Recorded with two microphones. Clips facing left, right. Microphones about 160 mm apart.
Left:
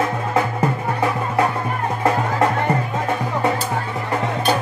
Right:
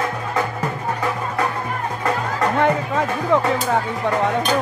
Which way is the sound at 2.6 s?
90° right.